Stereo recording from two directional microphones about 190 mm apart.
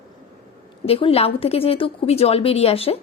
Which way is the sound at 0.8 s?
30° left (ahead or behind).